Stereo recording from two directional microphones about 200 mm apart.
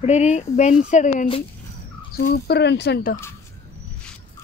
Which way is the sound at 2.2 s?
50° left (ahead or behind).